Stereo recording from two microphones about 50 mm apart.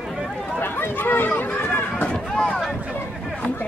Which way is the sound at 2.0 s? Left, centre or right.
Centre.